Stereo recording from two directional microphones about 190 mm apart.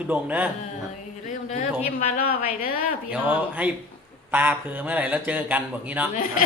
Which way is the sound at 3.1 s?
10° right (ahead or behind).